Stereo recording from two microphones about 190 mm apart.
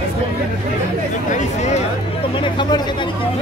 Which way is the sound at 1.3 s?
40° left (ahead or behind).